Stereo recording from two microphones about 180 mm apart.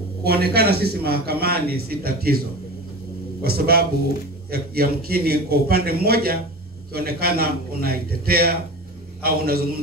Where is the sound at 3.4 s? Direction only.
60° right (ahead or behind).